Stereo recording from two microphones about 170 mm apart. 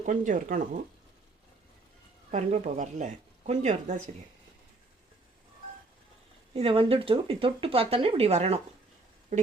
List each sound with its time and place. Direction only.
0.0 s speech: 50° right (ahead or behind)
2.3 s speech: 45° right (ahead or behind)
6.5 s speech: 35° right (ahead or behind)